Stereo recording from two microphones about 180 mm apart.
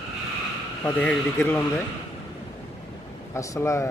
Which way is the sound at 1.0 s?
10° left (ahead or behind).